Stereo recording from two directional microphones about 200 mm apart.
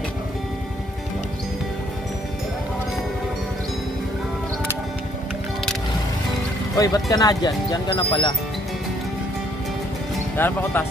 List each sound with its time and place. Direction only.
6.8 s speech: 15° left (ahead or behind)
10.3 s speech: 10° left (ahead or behind)